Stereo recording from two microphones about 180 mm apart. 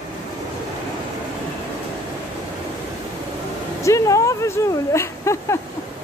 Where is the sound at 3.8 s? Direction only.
15° left (ahead or behind).